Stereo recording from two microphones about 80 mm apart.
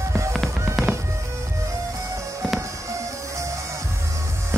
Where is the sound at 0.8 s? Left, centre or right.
Centre.